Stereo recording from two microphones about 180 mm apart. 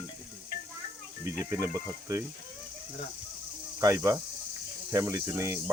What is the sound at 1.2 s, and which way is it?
Speech, 15° right (ahead or behind).